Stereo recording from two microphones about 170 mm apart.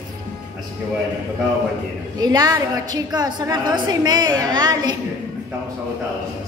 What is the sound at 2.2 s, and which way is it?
A woman's voice, 25° right (ahead or behind).